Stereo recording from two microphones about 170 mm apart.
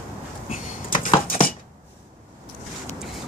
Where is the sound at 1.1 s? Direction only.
35° left (ahead or behind).